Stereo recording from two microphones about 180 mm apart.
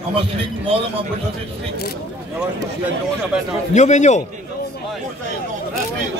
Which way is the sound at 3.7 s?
40° left (ahead or behind).